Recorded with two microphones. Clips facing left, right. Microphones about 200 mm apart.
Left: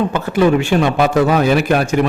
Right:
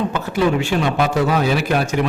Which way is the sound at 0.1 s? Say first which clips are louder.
Left 5 dB; 55° left (ahead or behind).